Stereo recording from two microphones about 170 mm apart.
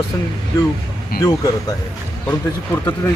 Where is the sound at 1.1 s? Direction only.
60° left (ahead or behind).